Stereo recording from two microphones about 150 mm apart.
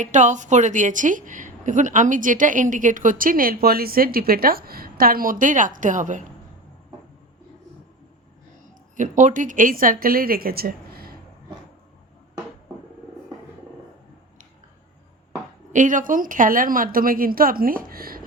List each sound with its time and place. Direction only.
0.0 s a woman's voice: 55° right (ahead or behind)
9.0 s speech: 55° right (ahead or behind); by 11.2 s 85° right
15.7 s speech: 60° right (ahead or behind); by 18.2 s 80° right